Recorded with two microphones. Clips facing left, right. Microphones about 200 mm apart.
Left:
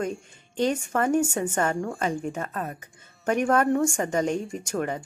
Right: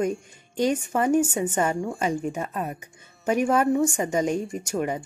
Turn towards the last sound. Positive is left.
turn(degrees=-10)  # may be behind; listen again after turning